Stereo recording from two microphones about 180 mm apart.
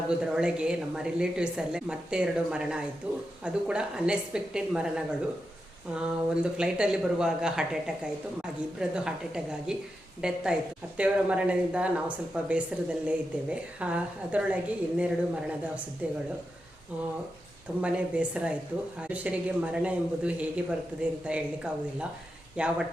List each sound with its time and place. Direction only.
0.1 s a woman's voice: 5° right (ahead or behind)
17.7 s a woman's voice: 5° right (ahead or behind)